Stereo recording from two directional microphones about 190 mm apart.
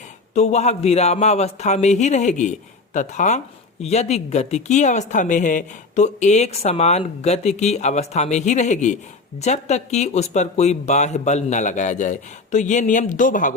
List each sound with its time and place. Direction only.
0.3 s speech: 35° left (ahead or behind)